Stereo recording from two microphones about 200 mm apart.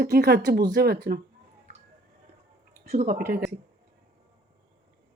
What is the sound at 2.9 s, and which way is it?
Speech, 45° right (ahead or behind).